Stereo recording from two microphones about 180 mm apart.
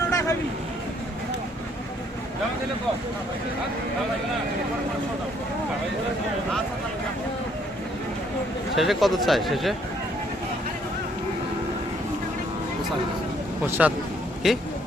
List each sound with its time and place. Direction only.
0.1 s a sound: 20° left (ahead or behind)
8.7 s speech: centre (ahead or behind)
13.7 s speech: 10° right (ahead or behind)